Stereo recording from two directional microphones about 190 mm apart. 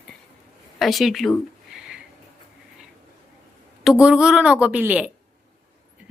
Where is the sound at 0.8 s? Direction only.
Centre (ahead or behind).